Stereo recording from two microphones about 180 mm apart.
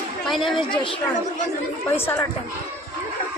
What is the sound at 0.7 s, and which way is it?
Speech, 25° left (ahead or behind).